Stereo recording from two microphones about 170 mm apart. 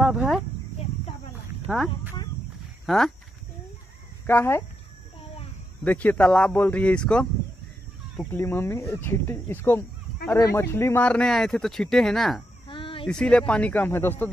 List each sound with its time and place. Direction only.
0.0 s cricket: 5° right (ahead or behind)
4.3 s speech: 15° left (ahead or behind)
5.9 s speech: 10° left (ahead or behind)
8.3 s speech: 15° left (ahead or behind)
12.6 s a sound: 30° left (ahead or behind)
13.0 s speech: 5° left (ahead or behind)